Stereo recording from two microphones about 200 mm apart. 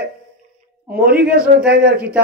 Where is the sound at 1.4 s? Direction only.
5° right (ahead or behind).